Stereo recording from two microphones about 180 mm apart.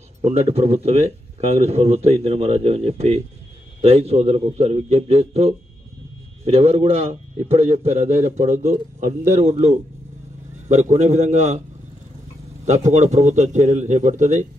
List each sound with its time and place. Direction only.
0.2 s a man's voice: 35° right (ahead or behind)
12.6 s a man's voice: 40° right (ahead or behind)